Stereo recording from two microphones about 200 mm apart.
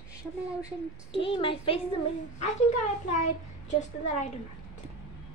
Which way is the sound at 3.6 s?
35° left (ahead or behind).